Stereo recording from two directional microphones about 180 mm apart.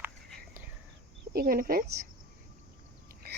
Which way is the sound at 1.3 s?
55° right (ahead or behind).